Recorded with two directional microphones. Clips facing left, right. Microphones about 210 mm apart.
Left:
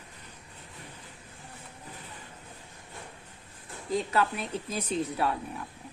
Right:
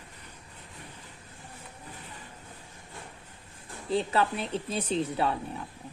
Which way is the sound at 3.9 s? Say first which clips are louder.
Right 1 dB; 30° right (ahead or behind).